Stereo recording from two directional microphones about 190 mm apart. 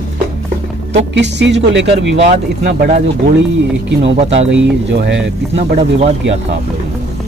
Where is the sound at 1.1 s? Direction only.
65° right (ahead or behind).